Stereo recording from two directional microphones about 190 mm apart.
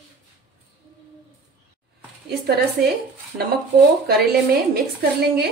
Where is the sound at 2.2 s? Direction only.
60° right (ahead or behind).